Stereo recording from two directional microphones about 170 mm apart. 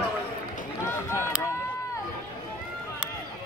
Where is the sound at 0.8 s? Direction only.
15° left (ahead or behind).